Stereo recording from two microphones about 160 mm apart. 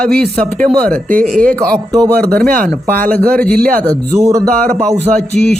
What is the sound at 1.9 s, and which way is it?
Speech, 20° right (ahead or behind).